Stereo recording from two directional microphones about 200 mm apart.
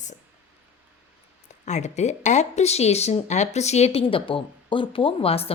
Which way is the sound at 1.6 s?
35° left (ahead or behind).